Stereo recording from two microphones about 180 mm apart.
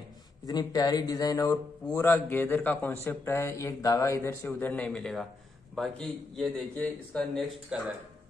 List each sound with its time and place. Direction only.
0.5 s a man's voice: 20° left (ahead or behind)
7.7 s a man's voice: 5° right (ahead or behind)